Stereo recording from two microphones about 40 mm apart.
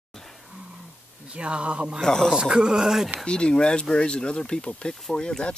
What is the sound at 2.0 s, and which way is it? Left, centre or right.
Speech, centre.